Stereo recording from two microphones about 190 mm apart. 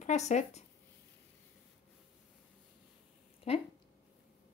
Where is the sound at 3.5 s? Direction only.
30° left (ahead or behind).